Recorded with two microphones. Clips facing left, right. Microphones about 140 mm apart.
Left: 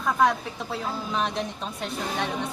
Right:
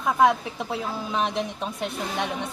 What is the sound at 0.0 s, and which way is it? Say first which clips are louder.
A woman's voice: right 2 dB; 20° right (ahead or behind).